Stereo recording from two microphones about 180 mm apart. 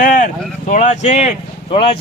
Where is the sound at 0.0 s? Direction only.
50° left (ahead or behind).